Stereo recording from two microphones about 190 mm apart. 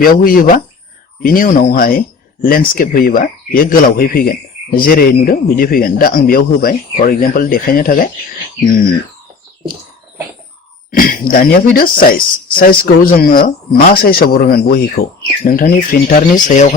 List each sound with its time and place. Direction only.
0.0 s speech: 50° left (ahead or behind)
10.9 s speech: 50° left (ahead or behind)